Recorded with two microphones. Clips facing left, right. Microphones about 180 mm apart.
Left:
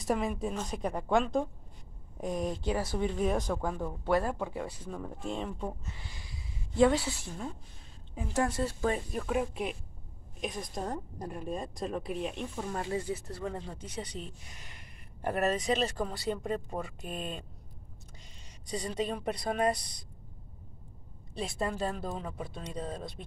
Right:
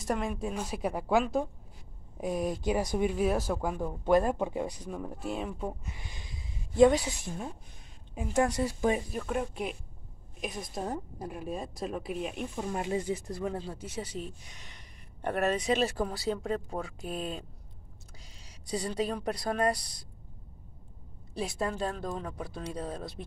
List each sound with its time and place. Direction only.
0.0 s a woman's voice: centre (ahead or behind); by 9.0 s 15° right (ahead or behind)
9.1 s a woman's voice: centre (ahead or behind)
18.7 s a woman's voice: 5° right (ahead or behind)
21.4 s a woman's voice: centre (ahead or behind)